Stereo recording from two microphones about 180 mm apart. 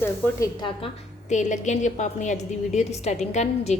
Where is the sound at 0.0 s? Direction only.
10° left (ahead or behind).